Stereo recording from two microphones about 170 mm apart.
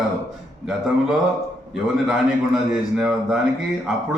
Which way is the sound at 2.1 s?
Centre (ahead or behind).